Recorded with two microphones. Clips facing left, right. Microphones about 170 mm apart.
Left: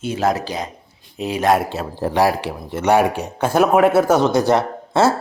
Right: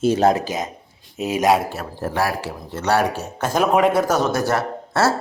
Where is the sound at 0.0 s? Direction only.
40° right (ahead or behind).